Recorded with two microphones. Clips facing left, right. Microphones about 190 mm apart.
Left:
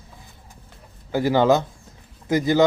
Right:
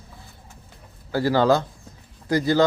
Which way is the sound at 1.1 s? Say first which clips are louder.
Left 1 dB; 20° left (ahead or behind).